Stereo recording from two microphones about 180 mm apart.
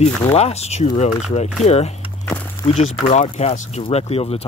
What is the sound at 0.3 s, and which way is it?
Speech, 35° left (ahead or behind).